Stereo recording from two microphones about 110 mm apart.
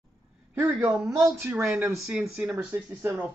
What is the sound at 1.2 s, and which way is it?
Speech, 25° right (ahead or behind).